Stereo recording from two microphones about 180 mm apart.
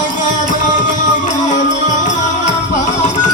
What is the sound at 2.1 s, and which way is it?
Music, 45° left (ahead or behind).